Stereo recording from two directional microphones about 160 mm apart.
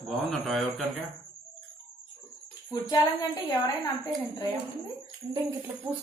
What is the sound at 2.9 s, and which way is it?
Speech, 25° left (ahead or behind).